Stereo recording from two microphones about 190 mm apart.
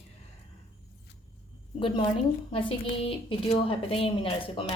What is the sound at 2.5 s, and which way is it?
A woman's voice, 25° left (ahead or behind).